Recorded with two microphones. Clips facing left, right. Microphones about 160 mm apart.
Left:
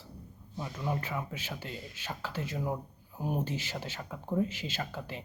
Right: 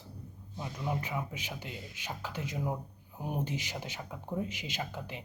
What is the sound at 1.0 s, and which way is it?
Speech, 15° right (ahead or behind).